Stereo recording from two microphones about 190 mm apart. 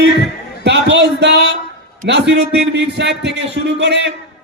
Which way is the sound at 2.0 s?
65° right (ahead or behind).